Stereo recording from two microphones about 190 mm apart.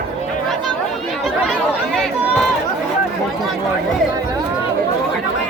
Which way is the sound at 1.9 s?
Centre (ahead or behind).